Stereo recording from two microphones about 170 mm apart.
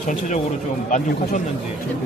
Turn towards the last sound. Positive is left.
turn(degrees=50)  # may be behind; listen again after turning